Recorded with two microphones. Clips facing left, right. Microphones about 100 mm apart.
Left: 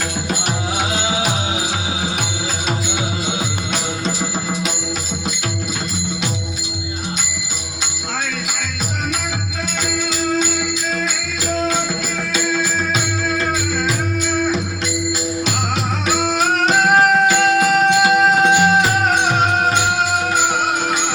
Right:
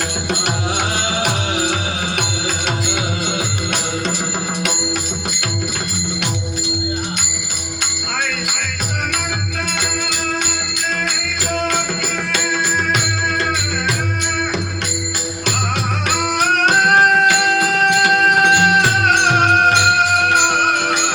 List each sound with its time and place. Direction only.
17.8 s music: 60° right (ahead or behind)